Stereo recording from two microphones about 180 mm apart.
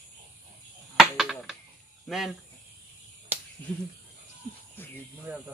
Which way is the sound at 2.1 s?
Centre (ahead or behind).